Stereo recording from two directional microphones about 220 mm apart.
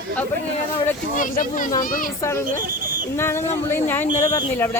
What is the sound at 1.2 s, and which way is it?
Speech, 40° left (ahead or behind).